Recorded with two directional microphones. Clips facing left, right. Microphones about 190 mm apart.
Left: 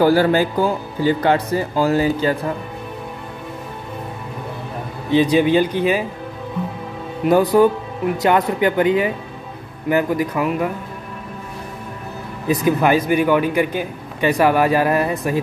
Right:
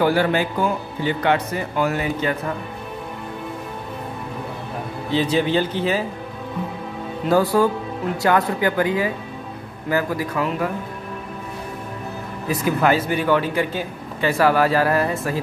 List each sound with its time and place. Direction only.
0.0 s speech: 35° left (ahead or behind)
5.1 s a man's voice: 15° left (ahead or behind)
7.2 s speech: 20° left (ahead or behind)
12.4 s a man's voice: 15° left (ahead or behind)